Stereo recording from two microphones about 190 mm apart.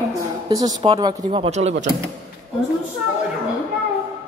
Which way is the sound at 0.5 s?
20° right (ahead or behind).